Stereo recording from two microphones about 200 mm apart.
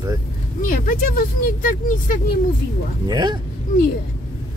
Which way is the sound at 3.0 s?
20° right (ahead or behind).